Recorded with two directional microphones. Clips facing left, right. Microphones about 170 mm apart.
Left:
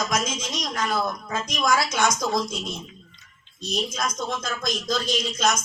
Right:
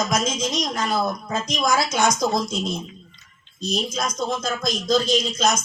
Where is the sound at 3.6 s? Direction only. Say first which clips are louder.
Right 2 dB; 30° right (ahead or behind).